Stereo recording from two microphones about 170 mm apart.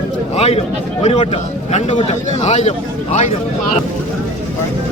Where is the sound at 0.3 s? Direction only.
35° left (ahead or behind).